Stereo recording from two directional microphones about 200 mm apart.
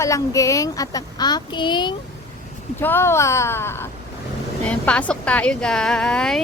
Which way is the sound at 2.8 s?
10° left (ahead or behind).